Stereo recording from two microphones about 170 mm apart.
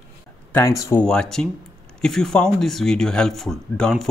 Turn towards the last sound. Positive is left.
turn(degrees=0)  # may be behind; listen again after turning